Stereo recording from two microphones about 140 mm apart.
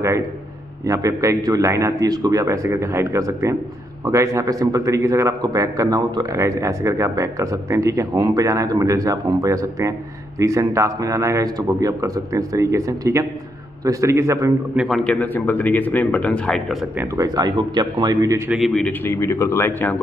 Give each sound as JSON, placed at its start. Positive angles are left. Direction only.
{"t": 0.8, "sound": "a man's voice", "side_deg": -20}
{"t": 14.8, "sound": "speech", "side_deg": 0}
{"t": 17.2, "sound": "a man's voice", "side_deg": -30}
{"t": 18.5, "sound": "speech", "side_deg": 0}